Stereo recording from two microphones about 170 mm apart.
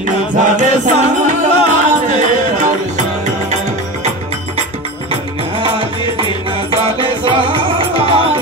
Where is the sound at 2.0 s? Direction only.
45° right (ahead or behind).